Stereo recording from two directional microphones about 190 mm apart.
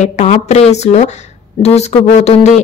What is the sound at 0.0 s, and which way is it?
A man's voice, 35° left (ahead or behind).